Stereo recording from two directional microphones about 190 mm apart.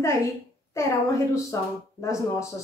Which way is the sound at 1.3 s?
15° left (ahead or behind).